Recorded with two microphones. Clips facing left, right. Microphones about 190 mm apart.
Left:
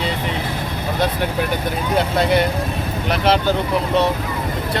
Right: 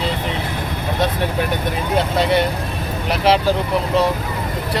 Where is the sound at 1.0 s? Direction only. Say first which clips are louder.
Even; centre (ahead or behind).